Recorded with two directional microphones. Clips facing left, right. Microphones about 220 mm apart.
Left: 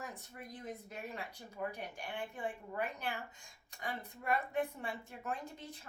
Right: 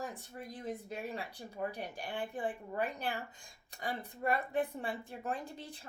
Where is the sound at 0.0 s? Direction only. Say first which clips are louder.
Right 5 dB; 30° right (ahead or behind).